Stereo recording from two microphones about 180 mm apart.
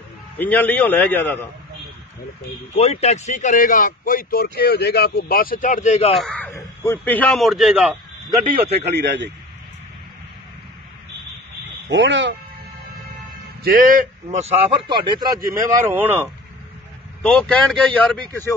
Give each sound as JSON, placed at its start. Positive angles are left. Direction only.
{"t": 0.4, "sound": "a man's voice", "side_deg": 10}
{"t": 2.7, "sound": "speech", "side_deg": 35}
{"t": 6.1, "sound": "a man's voice", "side_deg": 5}
{"t": 8.5, "sound": "a man's voice", "side_deg": -35}
{"t": 8.9, "sound": "a man's voice", "side_deg": -75}
{"t": 11.9, "sound": "speech", "side_deg": -80}
{"t": 13.7, "sound": "speech", "side_deg": -50}
{"t": 14.9, "sound": "speech", "side_deg": -25}
{"t": 15.5, "sound": "speech", "side_deg": -10}
{"t": 17.2, "sound": "a man's voice", "side_deg": 5}